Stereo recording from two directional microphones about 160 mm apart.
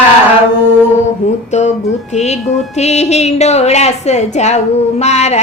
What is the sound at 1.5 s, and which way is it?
A woman's voice, 45° left (ahead or behind).